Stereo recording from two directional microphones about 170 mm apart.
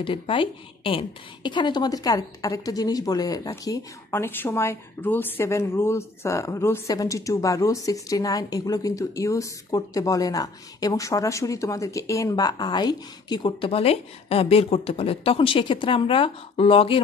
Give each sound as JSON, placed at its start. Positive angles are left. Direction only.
{"t": 0.0, "sound": "a woman's voice", "side_deg": 30}